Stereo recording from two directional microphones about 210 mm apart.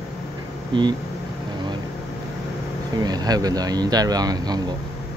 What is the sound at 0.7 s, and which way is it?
Speech, 20° right (ahead or behind).